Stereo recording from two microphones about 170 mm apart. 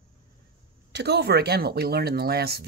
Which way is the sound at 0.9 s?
75° right (ahead or behind).